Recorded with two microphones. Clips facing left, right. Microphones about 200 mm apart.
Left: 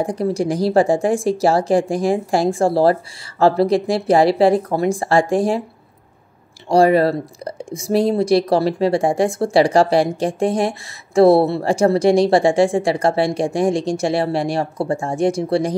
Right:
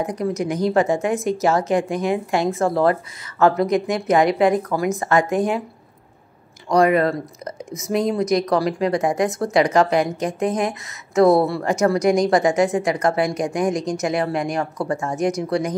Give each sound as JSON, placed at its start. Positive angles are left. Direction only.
{"t": 0.0, "sound": "a woman's voice", "side_deg": 30}
{"t": 6.7, "sound": "speech", "side_deg": 30}